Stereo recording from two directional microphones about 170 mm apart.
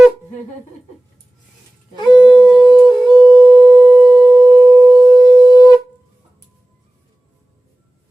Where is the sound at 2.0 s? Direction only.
25° left (ahead or behind).